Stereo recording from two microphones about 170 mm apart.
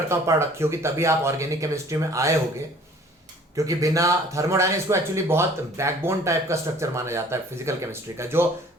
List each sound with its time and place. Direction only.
0.1 s a man's voice: 15° right (ahead or behind)
3.5 s a man's voice: 20° right (ahead or behind)